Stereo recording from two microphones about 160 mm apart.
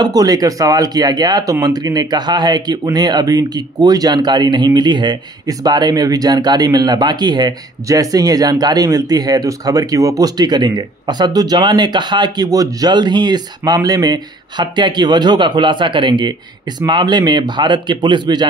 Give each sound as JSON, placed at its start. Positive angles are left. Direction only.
{"t": 0.0, "sound": "speech", "side_deg": -25}